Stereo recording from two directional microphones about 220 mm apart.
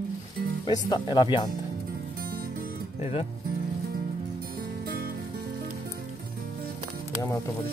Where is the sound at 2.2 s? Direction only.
45° right (ahead or behind).